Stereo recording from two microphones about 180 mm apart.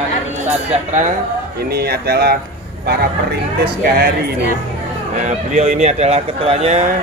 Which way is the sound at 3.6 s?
60° right (ahead or behind).